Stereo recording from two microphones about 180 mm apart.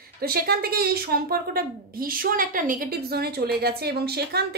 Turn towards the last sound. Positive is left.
turn(degrees=-60)  # may be behind; listen again after turning